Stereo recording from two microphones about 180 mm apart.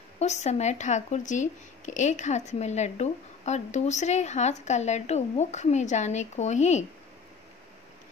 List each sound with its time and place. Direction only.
0.2 s speech: 40° left (ahead or behind)